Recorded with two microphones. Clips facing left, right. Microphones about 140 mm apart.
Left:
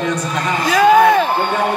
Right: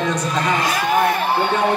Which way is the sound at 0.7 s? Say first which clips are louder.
Left 11 dB; 90° left.